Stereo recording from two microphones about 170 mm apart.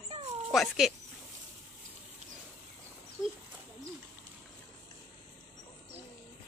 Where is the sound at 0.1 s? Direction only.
40° right (ahead or behind).